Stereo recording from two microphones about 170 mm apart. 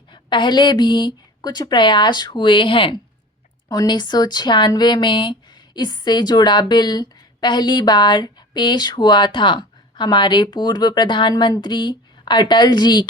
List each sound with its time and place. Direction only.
0.1 s speech: 25° left (ahead or behind)